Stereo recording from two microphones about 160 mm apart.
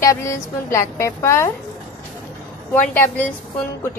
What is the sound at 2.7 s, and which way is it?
Speech, 10° left (ahead or behind).